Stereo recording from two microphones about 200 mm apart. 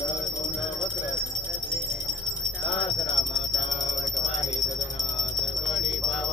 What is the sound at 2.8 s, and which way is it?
Music, 20° left (ahead or behind).